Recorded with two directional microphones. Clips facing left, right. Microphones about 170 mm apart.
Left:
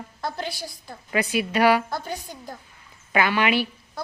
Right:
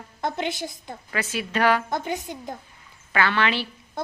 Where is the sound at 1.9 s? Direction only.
20° right (ahead or behind).